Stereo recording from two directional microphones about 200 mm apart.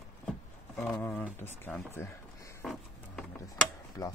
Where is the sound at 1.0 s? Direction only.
10° left (ahead or behind).